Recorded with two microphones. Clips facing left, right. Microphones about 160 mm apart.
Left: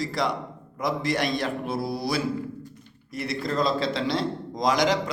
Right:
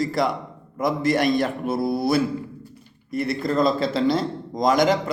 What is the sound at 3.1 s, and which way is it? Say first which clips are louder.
Speech: right 6 dB; 55° right (ahead or behind).